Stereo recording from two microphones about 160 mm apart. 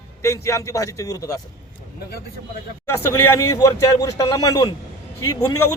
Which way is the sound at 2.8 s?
15° left (ahead or behind).